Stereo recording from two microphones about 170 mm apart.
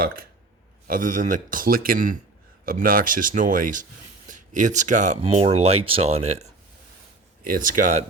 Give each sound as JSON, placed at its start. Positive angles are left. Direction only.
{"t": 0.9, "sound": "speech", "side_deg": -50}
{"t": 7.4, "sound": "speech", "side_deg": -55}